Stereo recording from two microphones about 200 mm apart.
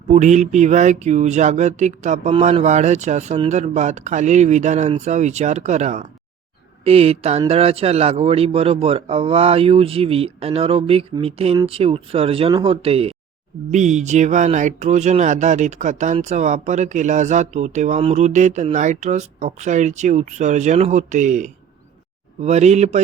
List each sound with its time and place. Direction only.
0.1 s a man's voice: 35° right (ahead or behind)